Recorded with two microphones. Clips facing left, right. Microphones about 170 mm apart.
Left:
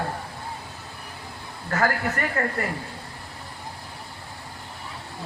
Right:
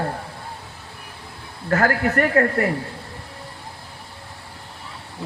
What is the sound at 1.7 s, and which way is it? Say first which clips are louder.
A man's voice: right 5 dB; 60° right (ahead or behind).